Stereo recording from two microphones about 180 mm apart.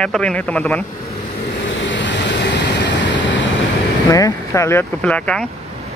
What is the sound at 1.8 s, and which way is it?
Vehicle, 90° left.